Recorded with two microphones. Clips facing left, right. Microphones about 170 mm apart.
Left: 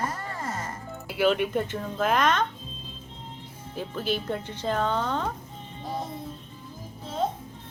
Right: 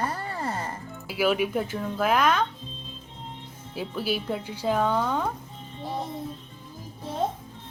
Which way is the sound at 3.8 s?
5° right (ahead or behind).